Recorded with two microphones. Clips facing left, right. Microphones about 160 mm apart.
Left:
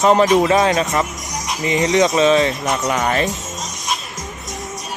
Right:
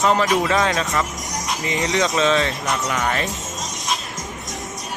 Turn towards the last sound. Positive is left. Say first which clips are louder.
# left 4 dB
turn(degrees=30)  # may be behind; listen again after turning